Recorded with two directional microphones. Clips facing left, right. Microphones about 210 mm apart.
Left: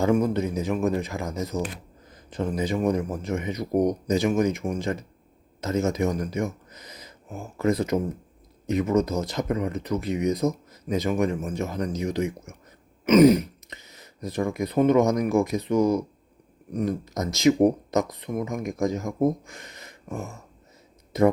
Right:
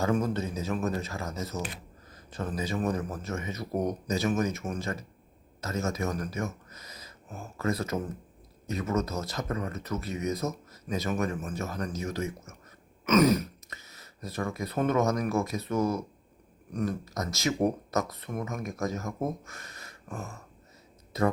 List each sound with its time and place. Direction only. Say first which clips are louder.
0.0 s speech: left 6 dB; 15° left (ahead or behind)